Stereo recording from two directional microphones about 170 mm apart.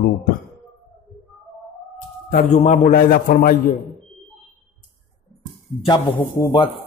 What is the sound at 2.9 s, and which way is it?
Speech, 55° left (ahead or behind).